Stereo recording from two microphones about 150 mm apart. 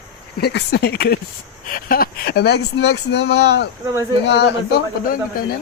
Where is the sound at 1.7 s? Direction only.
75° left (ahead or behind); by 3.6 s 90° left.